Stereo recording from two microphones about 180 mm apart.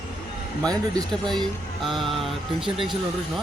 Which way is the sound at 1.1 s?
5° left (ahead or behind).